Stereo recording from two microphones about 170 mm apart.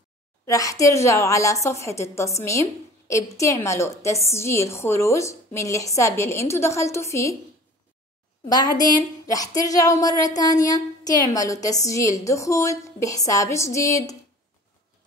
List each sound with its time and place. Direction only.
0.5 s a woman's voice: 20° left (ahead or behind)
8.5 s a woman's voice: 25° left (ahead or behind)